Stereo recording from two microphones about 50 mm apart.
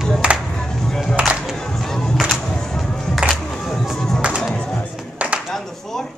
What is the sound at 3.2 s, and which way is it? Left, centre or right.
Music, centre.